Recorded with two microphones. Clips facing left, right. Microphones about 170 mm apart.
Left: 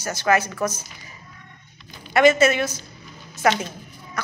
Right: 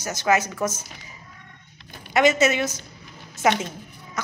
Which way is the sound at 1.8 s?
60° right (ahead or behind).